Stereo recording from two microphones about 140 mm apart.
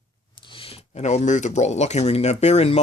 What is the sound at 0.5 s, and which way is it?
Speech, 40° left (ahead or behind).